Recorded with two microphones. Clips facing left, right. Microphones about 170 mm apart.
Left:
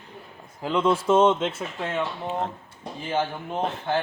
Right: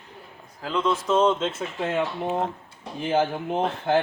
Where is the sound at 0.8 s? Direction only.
30° left (ahead or behind).